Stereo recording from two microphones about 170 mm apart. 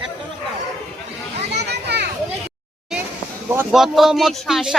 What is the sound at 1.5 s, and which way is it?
Children playing, 75° right (ahead or behind).